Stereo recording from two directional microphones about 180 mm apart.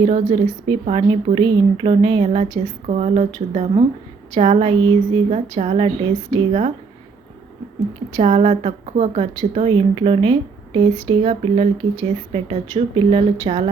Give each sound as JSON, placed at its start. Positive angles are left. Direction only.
{"t": 0.0, "sound": "speech", "side_deg": -35}
{"t": 8.1, "sound": "speech", "side_deg": -35}